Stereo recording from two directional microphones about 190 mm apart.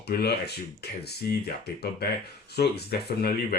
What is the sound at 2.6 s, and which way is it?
Speech, 55° left (ahead or behind).